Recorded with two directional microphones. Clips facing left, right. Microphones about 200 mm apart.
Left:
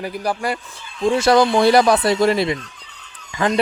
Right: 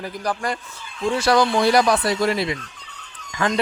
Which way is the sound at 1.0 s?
25° left (ahead or behind).